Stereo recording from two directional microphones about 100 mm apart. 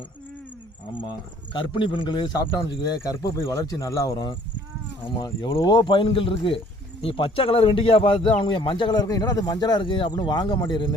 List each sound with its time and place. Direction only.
1.5 s speech: 55° left (ahead or behind)
3.5 s speech: 35° left (ahead or behind); by 10.9 s 50° left (ahead or behind)